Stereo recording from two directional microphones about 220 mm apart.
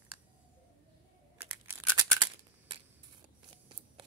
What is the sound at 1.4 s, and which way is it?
Crumpling, 10° right (ahead or behind).